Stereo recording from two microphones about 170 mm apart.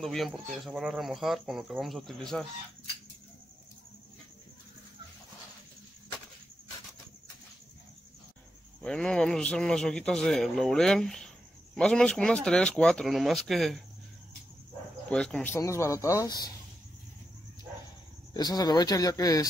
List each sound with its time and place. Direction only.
0.0 s a man's voice: centre (ahead or behind)
8.8 s a man's voice: 5° left (ahead or behind)
15.0 s speech: 5° left (ahead or behind); by 16.5 s 25° left (ahead or behind)
18.3 s speech: 25° left (ahead or behind)